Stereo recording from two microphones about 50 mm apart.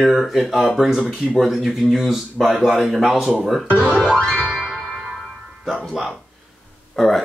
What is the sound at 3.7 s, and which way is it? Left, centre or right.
Speech, right.